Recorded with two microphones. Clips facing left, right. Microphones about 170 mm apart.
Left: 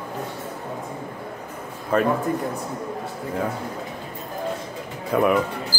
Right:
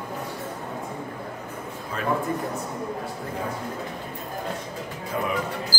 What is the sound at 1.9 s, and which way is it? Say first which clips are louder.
Speech: left 12 dB; 60° left (ahead or behind).